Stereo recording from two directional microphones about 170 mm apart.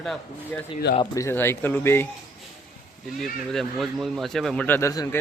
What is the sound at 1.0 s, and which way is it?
Speech, 20° left (ahead or behind).